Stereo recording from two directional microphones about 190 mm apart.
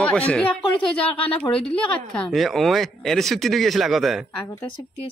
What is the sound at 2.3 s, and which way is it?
Speech, centre (ahead or behind).